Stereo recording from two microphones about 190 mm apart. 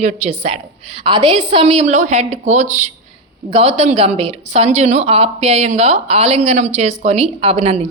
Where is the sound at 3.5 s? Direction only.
35° right (ahead or behind).